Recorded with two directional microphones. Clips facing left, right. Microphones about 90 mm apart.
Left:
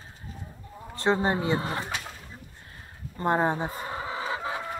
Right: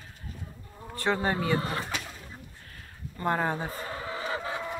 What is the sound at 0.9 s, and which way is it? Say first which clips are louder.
Speech: left 3 dB; 20° left (ahead or behind).